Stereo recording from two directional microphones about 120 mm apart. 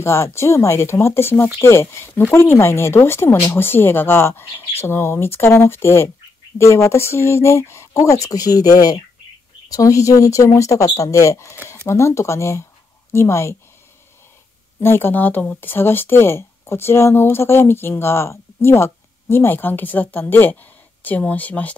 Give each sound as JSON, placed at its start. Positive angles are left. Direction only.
{"t": 0.0, "sound": "speech", "side_deg": 20}
{"t": 14.8, "sound": "speech", "side_deg": 20}